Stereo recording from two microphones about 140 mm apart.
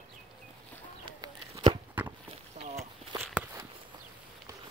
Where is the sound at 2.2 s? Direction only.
45° right (ahead or behind).